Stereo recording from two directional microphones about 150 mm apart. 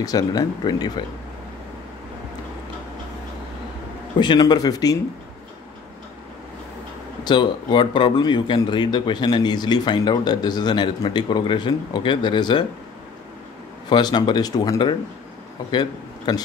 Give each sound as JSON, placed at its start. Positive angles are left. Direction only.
{"t": 0.0, "sound": "speech", "side_deg": 25}
{"t": 4.2, "sound": "speech", "side_deg": 30}
{"t": 7.2, "sound": "speech", "side_deg": 30}
{"t": 13.8, "sound": "a man's voice", "side_deg": 30}